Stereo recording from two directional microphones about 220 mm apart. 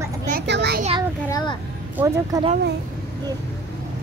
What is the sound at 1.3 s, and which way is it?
Music, 20° left (ahead or behind).